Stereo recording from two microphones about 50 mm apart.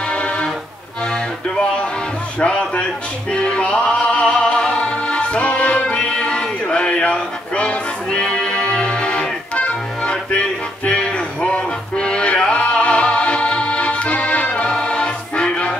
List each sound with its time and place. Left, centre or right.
0.1 s music: left